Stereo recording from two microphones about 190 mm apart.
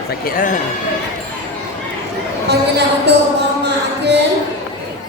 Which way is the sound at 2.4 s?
60° right (ahead or behind).